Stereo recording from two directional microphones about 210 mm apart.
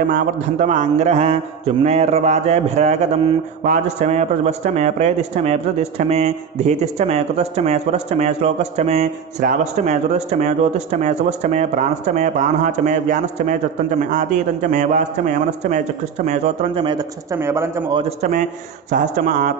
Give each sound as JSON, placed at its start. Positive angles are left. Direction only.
{"t": 0.0, "sound": "speech", "side_deg": -40}
{"t": 16.3, "sound": "a man's voice", "side_deg": -25}
{"t": 18.0, "sound": "speech", "side_deg": -35}